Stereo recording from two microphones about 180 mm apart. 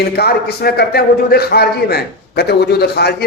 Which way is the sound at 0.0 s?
65° left (ahead or behind).